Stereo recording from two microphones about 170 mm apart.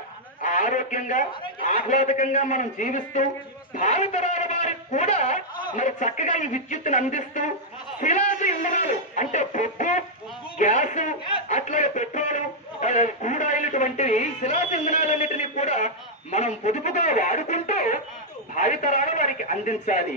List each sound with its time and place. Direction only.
0.4 s a man's voice: 50° left (ahead or behind)